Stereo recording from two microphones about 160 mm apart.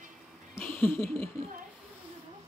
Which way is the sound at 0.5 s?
10° left (ahead or behind).